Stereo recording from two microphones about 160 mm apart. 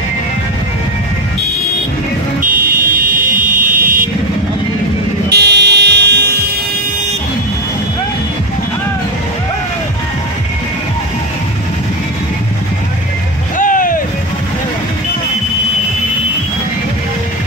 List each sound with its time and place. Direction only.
2.4 s vehicle: 65° right (ahead or behind)
5.3 s a sound: 90° right
13.6 s vehicle: 60° left (ahead or behind)